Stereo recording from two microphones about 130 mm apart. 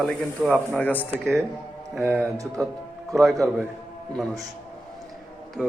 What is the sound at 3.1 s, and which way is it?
Speech, centre (ahead or behind).